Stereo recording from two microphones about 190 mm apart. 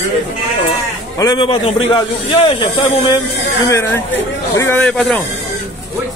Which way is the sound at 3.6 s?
15° left (ahead or behind).